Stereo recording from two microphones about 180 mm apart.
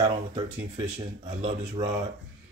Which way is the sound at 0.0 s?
20° right (ahead or behind).